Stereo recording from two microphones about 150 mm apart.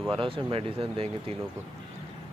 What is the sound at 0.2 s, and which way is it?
Speech, 35° right (ahead or behind).